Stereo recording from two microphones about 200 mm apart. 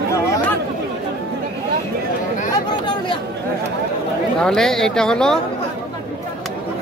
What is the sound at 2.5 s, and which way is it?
Chatter, 20° left (ahead or behind).